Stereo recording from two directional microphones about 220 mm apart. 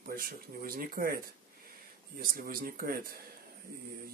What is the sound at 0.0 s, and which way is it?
Speech, 40° right (ahead or behind).